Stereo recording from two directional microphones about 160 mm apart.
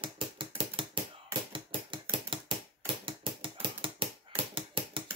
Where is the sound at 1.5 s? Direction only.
35° right (ahead or behind).